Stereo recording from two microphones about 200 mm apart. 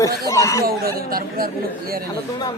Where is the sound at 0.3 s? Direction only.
15° left (ahead or behind).